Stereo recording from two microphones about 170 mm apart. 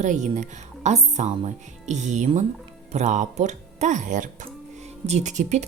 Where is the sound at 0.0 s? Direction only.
45° right (ahead or behind).